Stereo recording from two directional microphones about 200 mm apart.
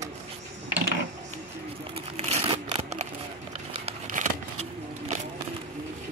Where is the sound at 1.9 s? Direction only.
30° right (ahead or behind).